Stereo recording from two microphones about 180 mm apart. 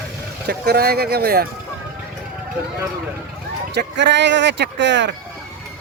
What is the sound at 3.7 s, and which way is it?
Speech, 75° right (ahead or behind).